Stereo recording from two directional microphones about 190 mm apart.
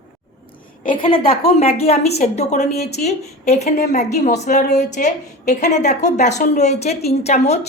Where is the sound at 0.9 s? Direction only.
25° left (ahead or behind).